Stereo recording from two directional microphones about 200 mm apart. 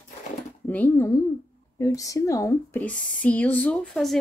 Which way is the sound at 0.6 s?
10° left (ahead or behind).